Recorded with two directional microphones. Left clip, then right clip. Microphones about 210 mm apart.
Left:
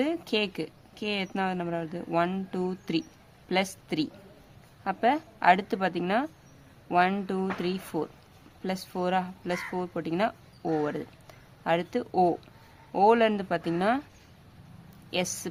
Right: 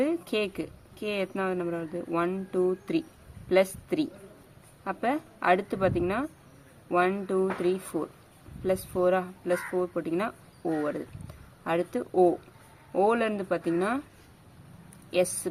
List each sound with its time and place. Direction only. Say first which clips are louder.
0.0 s a woman's voice: even; 45° left (ahead or behind)
11.6 s a woman's voice: left 1 dB; 45° left (ahead or behind)
15.1 s a woman's voice: right 4 dB; 45° left (ahead or behind)